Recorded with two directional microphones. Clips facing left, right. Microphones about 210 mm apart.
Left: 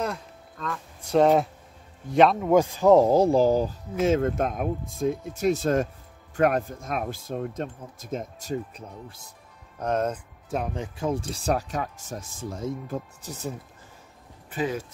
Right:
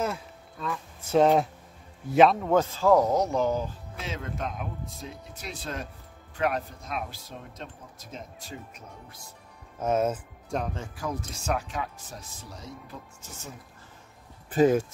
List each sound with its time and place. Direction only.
0.0 s a man's voice: 5° right (ahead or behind)
2.5 s speech: 15° left (ahead or behind); by 3.7 s 35° left (ahead or behind)
4.0 s speech: 50° left (ahead or behind)
9.8 s speech: 5° right (ahead or behind)
10.5 s speech: 10° left (ahead or behind); by 13.5 s 35° left (ahead or behind)
14.5 s speech: 45° right (ahead or behind)